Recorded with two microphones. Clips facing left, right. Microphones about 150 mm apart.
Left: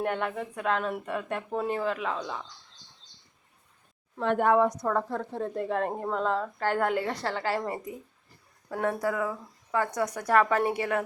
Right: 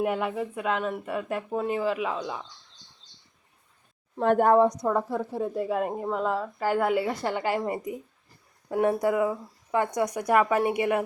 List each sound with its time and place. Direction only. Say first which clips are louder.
0.0 s speech: right 3 dB; 5° right (ahead or behind)
4.2 s speech: right 4 dB; 40° right (ahead or behind)
4.6 s speech: right 3 dB; 15° right (ahead or behind)